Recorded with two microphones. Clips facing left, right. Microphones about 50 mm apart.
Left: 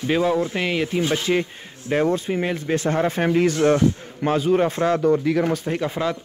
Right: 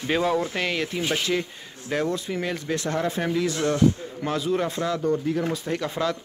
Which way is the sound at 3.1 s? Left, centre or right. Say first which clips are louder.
Left 7 dB; left.